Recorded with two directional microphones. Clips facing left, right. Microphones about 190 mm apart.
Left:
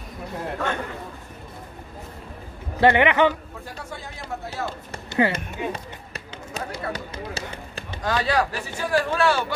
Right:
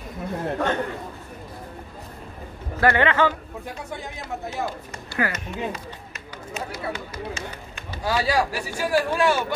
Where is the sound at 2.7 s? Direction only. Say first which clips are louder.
Left 2 dB; 15° left (ahead or behind).